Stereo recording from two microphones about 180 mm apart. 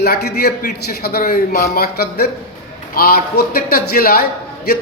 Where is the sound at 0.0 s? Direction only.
65° left (ahead or behind).